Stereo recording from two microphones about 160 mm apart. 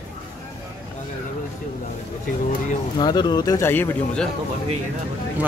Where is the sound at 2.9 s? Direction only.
25° left (ahead or behind).